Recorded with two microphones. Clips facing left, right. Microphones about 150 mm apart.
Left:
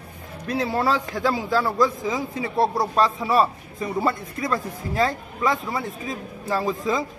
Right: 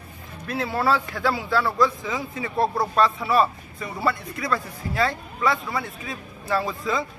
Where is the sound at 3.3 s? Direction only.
40° left (ahead or behind).